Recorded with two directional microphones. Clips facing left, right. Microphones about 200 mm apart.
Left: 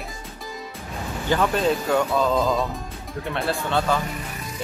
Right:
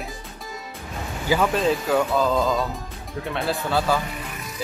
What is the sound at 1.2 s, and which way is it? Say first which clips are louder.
Speech: even; centre (ahead or behind).